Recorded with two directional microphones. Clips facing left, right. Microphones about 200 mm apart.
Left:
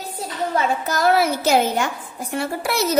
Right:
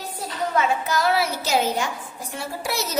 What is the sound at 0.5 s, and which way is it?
A woman's voice, 45° left (ahead or behind).